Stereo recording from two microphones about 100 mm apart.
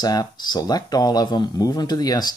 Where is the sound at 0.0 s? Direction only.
40° left (ahead or behind).